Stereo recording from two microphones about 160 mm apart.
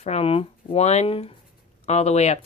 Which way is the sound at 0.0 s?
40° left (ahead or behind).